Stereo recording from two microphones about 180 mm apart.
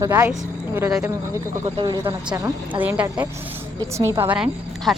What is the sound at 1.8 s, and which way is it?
Speech, 25° right (ahead or behind).